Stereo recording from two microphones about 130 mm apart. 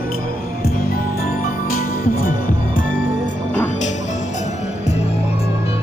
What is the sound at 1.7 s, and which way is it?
Music, 90° left.